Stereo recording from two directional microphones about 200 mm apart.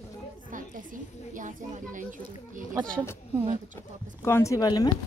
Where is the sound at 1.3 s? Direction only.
40° right (ahead or behind).